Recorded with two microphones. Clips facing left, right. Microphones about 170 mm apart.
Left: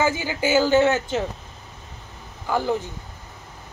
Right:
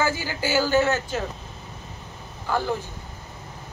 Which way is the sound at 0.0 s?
20° left (ahead or behind).